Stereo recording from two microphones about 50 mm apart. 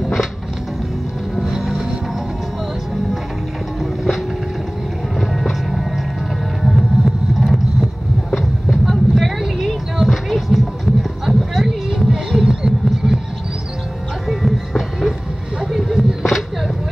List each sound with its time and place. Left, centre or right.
1.3 s boat: centre
3.8 s vehicle: centre
5.4 s music: centre
7.3 s vehicle: centre
9.9 s music: centre
14.2 s music: centre
15.6 s a sound: centre